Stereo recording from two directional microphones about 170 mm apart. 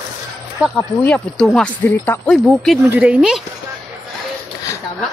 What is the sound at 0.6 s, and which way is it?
Speech, 5° left (ahead or behind).